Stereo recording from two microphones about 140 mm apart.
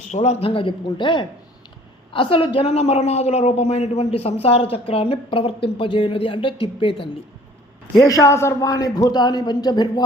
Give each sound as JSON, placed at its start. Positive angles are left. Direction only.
{"t": 0.1, "sound": "a woman's voice", "side_deg": 50}
{"t": 7.9, "sound": "a man's voice", "side_deg": 25}